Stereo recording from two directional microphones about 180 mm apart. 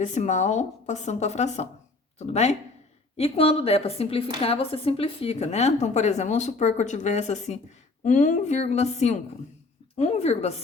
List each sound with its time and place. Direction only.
0.0 s speech: 40° left (ahead or behind)